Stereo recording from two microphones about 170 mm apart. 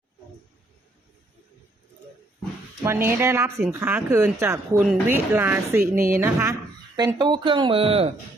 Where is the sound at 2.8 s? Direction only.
15° right (ahead or behind).